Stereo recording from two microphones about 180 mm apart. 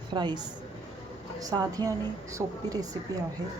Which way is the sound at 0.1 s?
25° right (ahead or behind).